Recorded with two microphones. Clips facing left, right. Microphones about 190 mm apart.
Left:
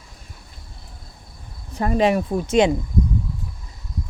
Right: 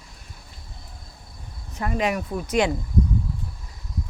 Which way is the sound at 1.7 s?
30° left (ahead or behind).